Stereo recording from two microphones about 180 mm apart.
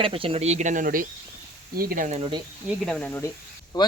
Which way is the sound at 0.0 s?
30° right (ahead or behind).